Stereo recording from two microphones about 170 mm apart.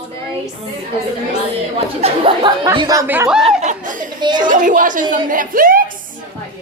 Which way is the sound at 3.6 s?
45° right (ahead or behind).